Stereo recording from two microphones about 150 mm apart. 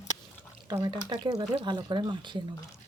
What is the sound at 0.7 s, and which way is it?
Speech, 25° right (ahead or behind).